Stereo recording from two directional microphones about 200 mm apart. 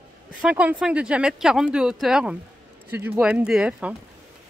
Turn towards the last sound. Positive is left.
turn(degrees=-5)  # may be behind; listen again after turning